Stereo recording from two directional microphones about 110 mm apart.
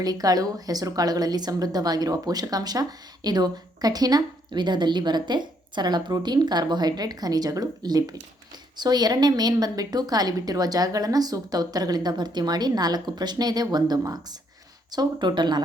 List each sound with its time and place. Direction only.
0.0 s a woman's voice: 35° right (ahead or behind)